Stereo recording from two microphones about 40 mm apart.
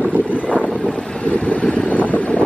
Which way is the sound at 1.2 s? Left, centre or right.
Left.